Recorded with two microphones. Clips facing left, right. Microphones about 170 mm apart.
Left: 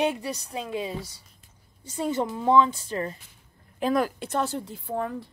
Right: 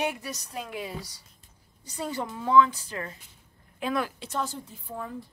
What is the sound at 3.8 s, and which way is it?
A woman's voice, 40° left (ahead or behind).